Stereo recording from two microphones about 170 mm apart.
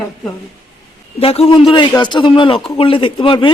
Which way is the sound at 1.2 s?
35° left (ahead or behind).